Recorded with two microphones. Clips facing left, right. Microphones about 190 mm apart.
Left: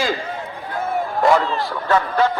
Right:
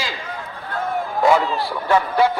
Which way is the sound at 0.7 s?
5° left (ahead or behind).